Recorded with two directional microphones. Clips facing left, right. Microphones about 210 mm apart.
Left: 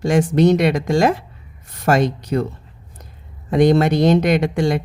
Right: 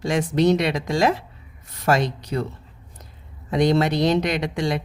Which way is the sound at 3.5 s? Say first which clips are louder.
Left 5 dB; 50° left (ahead or behind).